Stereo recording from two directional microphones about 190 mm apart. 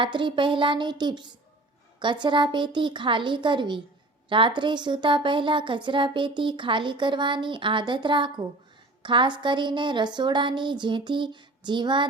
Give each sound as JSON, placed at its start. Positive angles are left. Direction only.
{"t": 0.0, "sound": "a woman's voice", "side_deg": -25}